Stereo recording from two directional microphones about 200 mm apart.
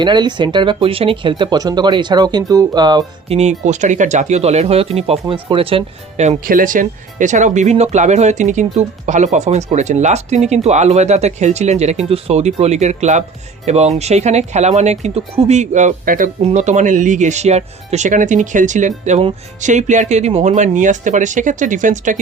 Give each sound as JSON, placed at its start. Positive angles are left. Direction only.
{"t": 0.0, "sound": "speech", "side_deg": -20}
{"t": 3.6, "sound": "speech", "side_deg": -35}